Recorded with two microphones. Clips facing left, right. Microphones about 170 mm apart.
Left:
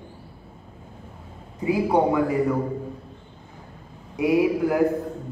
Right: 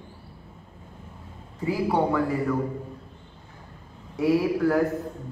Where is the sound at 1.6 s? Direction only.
20° left (ahead or behind).